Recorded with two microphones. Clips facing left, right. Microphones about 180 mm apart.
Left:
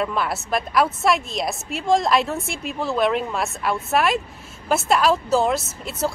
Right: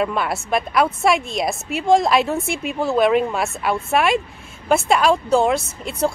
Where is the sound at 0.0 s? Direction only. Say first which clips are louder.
Right 2 dB; centre (ahead or behind).